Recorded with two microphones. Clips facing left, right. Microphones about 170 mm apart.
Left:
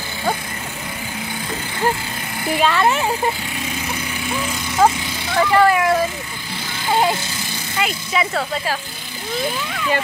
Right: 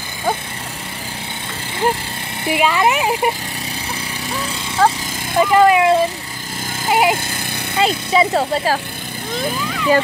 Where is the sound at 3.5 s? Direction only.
35° right (ahead or behind).